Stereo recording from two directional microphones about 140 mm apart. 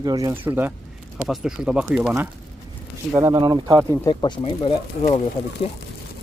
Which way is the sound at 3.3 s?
30° right (ahead or behind).